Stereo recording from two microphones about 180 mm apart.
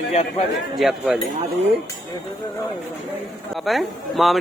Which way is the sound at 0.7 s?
Centre (ahead or behind).